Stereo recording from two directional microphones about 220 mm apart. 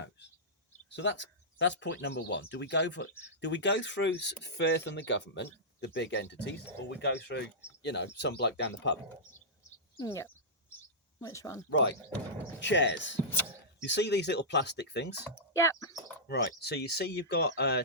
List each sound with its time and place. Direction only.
0.9 s speech: 50° left (ahead or behind)
10.0 s chirp: 10° left (ahead or behind)
11.2 s speech: 15° left (ahead or behind)
11.7 s speech: 55° left (ahead or behind)
15.4 s speech: 10° left (ahead or behind)
16.2 s speech: 50° left (ahead or behind)